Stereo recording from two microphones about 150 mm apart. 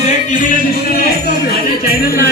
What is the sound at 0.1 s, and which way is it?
Music, 60° left (ahead or behind).